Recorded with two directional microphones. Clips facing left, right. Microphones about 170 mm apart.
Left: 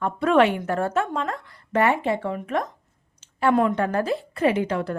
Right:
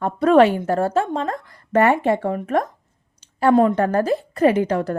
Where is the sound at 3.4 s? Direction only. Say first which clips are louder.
Right 5 dB; 30° right (ahead or behind).